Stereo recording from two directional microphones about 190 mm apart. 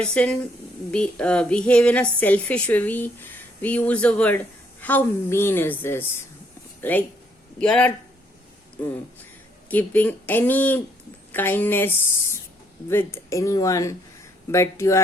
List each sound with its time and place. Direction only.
0.0 s speech: 5° left (ahead or behind)
7.6 s speech: 5° left (ahead or behind)